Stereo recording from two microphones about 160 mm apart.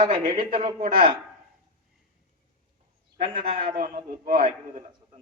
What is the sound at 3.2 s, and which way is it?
Speech, 35° right (ahead or behind).